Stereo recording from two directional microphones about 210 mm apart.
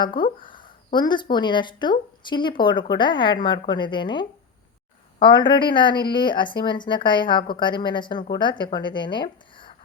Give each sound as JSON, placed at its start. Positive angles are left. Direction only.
{"t": 0.0, "sound": "a woman's voice", "side_deg": 20}